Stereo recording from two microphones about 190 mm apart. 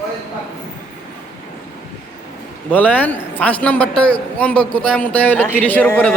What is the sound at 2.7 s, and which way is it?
A man's voice, 10° left (ahead or behind).